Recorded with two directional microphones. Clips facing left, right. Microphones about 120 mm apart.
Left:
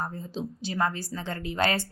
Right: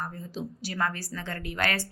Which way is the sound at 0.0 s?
25° left (ahead or behind).